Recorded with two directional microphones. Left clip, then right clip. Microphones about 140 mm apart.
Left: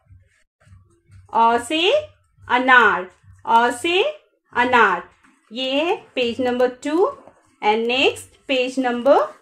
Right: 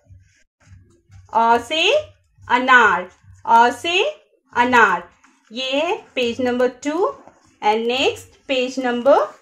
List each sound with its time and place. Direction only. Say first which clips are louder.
1.3 s speech: right 1 dB; 15° left (ahead or behind)